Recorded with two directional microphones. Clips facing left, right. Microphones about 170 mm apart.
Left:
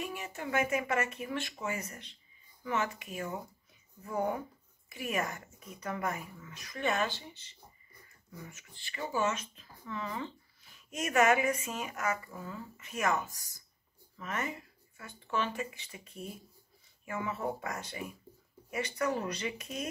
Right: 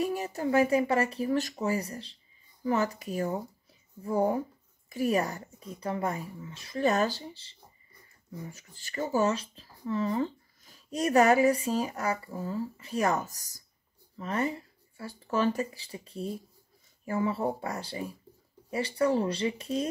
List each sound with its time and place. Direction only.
0.0 s speech: 40° right (ahead or behind)